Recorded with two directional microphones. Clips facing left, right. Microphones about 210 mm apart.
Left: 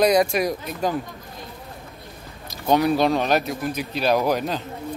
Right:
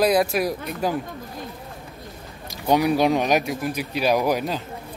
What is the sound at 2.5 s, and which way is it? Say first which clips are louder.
Speech: even; 15° right (ahead or behind).